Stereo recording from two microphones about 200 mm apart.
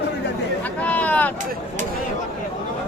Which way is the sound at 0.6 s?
5° left (ahead or behind).